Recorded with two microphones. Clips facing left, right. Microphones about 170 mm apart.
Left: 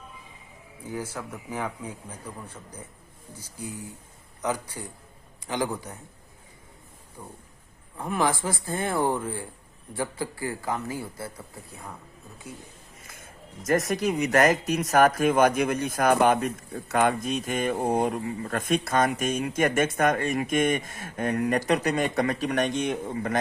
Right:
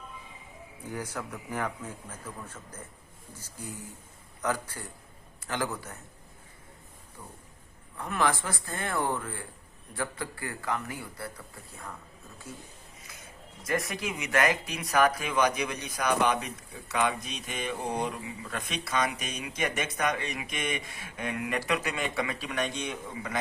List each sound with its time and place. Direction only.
0.9 s a man's voice: 10° left (ahead or behind)
7.2 s a man's voice: 20° left (ahead or behind)
13.0 s speech: 50° left (ahead or behind)